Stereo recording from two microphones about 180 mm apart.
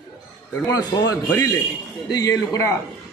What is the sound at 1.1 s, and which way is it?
A man's voice, 20° left (ahead or behind).